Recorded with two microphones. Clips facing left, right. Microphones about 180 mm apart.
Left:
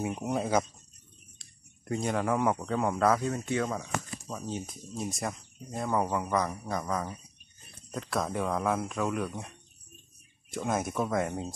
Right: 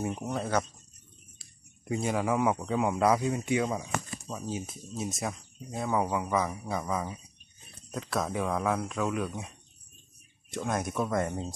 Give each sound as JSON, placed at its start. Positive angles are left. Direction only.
{"t": 0.0, "sound": "speech", "side_deg": 10}
{"t": 1.4, "sound": "speech", "side_deg": -5}
{"t": 10.5, "sound": "speech", "side_deg": 5}